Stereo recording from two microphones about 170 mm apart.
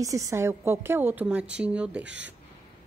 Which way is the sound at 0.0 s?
20° right (ahead or behind).